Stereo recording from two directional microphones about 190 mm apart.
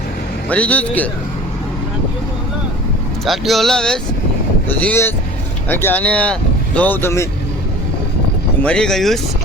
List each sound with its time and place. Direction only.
0.4 s speech: 5° left (ahead or behind)
3.2 s speech: centre (ahead or behind)
8.6 s speech: 5° left (ahead or behind)